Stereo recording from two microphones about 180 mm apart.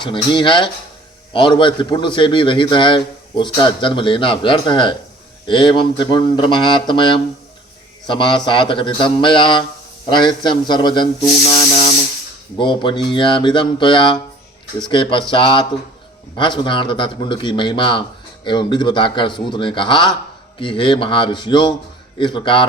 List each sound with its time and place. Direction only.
0.0 s a man's voice: 25° left (ahead or behind)
12.5 s a man's voice: 25° left (ahead or behind)